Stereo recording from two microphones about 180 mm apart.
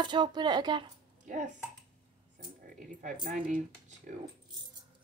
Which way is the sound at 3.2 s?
45° right (ahead or behind).